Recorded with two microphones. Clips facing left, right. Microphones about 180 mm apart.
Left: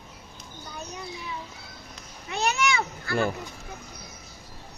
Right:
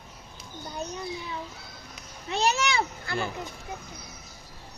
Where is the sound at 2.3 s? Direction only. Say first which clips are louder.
Even; 30° right (ahead or behind).